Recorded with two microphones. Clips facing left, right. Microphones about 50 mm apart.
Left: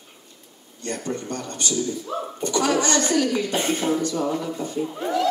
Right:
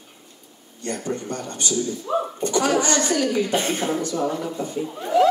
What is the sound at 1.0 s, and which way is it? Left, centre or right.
Speech, right.